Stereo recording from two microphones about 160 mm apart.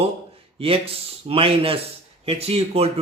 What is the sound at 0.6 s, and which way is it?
A man's voice, 35° right (ahead or behind).